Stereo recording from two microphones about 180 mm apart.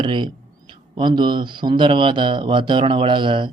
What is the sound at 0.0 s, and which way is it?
Speech, 25° right (ahead or behind).